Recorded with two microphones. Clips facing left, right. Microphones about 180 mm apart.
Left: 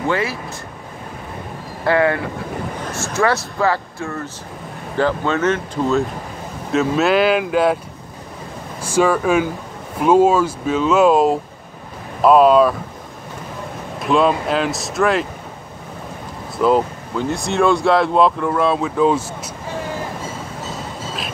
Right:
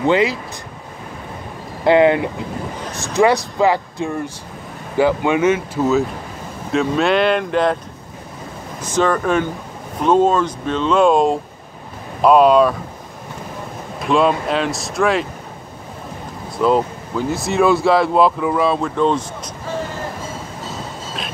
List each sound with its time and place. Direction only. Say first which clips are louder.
0.0 s speech: right 5 dB; 20° right (ahead or behind)
1.9 s speech: right 4 dB; 20° right (ahead or behind); by 7.8 s 5° left (ahead or behind)
8.8 s speech: left 1 dB; 10° left (ahead or behind)
13.9 s speech: even; centre (ahead or behind)
16.6 s speech: even; centre (ahead or behind)